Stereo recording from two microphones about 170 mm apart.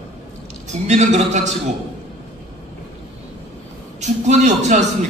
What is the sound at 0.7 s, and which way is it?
Speech, 40° right (ahead or behind).